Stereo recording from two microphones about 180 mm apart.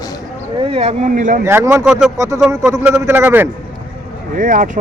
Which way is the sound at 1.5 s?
15° right (ahead or behind).